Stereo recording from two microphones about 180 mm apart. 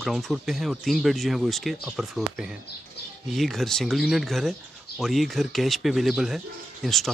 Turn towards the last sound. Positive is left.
turn(degrees=0)  # may be behind; listen again after turning